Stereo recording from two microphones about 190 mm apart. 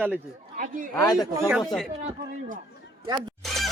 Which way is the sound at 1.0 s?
20° left (ahead or behind).